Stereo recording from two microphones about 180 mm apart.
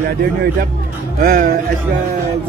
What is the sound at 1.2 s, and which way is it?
Speech, 55° right (ahead or behind).